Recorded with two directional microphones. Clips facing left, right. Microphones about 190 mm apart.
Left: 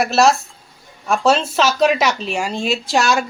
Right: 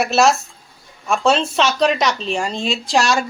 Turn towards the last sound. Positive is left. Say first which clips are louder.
# even
turn(degrees=0)  # may be behind; listen again after turning